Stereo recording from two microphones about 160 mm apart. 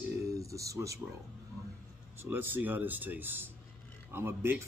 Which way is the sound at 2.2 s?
10° right (ahead or behind).